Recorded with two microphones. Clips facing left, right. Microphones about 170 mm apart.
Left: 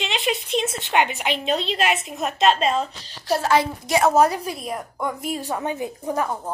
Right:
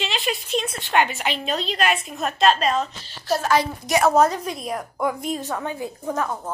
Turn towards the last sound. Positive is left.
turn(degrees=10)  # may be behind; listen again after turning